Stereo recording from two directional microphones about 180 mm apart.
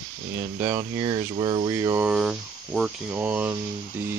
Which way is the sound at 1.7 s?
15° right (ahead or behind).